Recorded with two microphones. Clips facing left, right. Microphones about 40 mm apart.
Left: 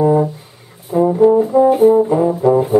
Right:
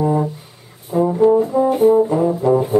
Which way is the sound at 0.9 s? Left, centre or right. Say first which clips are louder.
Left 2 dB; centre.